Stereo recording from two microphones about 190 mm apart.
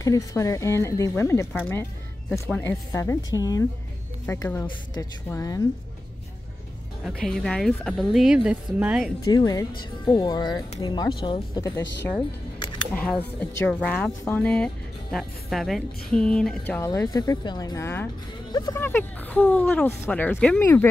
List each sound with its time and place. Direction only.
0.0 s speech: 20° left (ahead or behind)
7.1 s speech: centre (ahead or behind)
9.2 s speech: 20° left (ahead or behind)
12.9 s speech: 5° left (ahead or behind)